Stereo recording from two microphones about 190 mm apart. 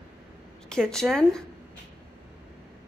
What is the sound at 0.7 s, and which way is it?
Speech, 5° left (ahead or behind).